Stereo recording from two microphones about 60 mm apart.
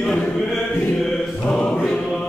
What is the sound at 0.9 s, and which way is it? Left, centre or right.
Choir, centre.